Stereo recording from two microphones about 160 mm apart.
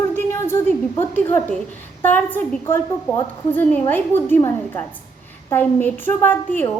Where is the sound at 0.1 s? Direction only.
15° left (ahead or behind).